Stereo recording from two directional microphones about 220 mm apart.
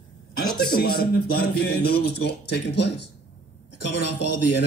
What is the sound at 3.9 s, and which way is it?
Speech, 90° left.